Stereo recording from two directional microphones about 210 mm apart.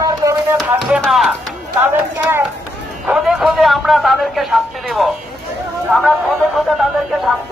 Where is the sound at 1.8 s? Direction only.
10° right (ahead or behind).